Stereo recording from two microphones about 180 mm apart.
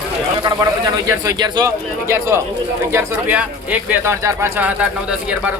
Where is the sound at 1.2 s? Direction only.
20° right (ahead or behind).